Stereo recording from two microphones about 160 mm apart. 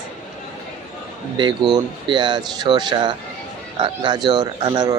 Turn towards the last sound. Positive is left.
turn(degrees=-25)  # may be behind; listen again after turning